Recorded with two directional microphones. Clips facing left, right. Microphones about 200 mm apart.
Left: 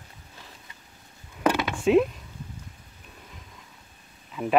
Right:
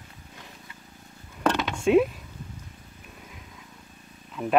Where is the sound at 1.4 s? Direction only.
10° left (ahead or behind).